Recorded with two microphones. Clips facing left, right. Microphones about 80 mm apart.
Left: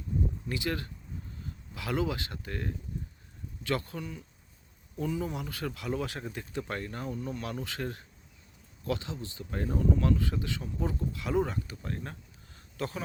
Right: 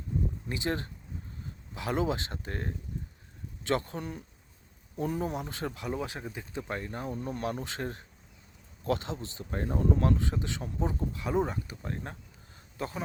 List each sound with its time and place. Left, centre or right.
0.4 s speech: right
4.9 s speech: right
7.2 s speech: right